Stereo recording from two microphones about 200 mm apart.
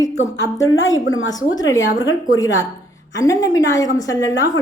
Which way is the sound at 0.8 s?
75° left (ahead or behind).